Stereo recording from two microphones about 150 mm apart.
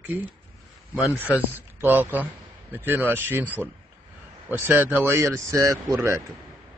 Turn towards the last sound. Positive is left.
turn(degrees=-15)  # may be behind; listen again after turning